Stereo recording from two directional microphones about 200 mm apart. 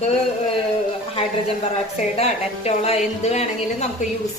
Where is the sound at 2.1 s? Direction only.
30° left (ahead or behind).